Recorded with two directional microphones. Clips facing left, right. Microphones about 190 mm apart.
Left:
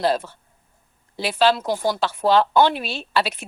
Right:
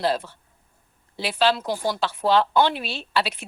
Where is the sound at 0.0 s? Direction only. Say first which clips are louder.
Left 3 dB; 45° left (ahead or behind).